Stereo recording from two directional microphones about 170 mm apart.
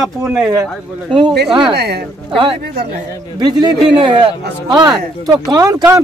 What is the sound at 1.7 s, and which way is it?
Speech, 70° right (ahead or behind).